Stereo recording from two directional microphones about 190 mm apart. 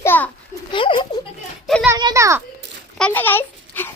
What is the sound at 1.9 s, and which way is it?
Speech, 15° right (ahead or behind).